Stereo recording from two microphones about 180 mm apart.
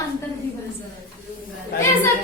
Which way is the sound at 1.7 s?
60° left (ahead or behind).